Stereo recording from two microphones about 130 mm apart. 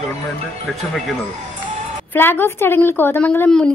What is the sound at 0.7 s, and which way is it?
Speech, centre (ahead or behind).